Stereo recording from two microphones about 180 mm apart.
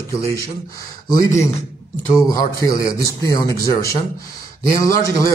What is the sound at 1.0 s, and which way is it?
A man's voice, 20° left (ahead or behind).